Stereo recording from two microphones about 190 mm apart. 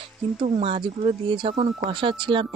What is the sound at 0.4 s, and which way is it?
Speech, 30° right (ahead or behind).